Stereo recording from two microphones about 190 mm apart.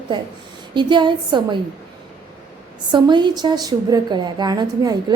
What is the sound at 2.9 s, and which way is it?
A woman's voice, 25° right (ahead or behind).